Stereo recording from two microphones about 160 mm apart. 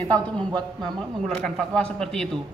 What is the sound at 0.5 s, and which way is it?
Speech, 25° right (ahead or behind).